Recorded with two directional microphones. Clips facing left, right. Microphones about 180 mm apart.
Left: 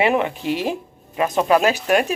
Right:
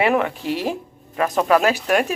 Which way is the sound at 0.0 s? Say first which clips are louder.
Even; 25° left (ahead or behind).